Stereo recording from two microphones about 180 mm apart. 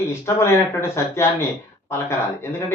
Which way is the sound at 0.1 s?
15° left (ahead or behind).